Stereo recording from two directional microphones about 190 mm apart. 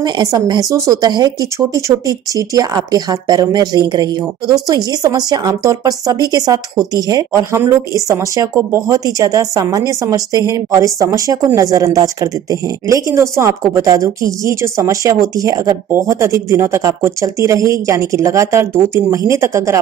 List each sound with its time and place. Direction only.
0.0 s speech: 20° right (ahead or behind)